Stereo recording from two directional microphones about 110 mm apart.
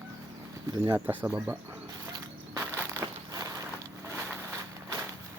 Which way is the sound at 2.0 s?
30° right (ahead or behind).